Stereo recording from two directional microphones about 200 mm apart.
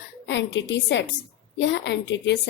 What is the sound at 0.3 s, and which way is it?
A woman's voice, 60° left (ahead or behind).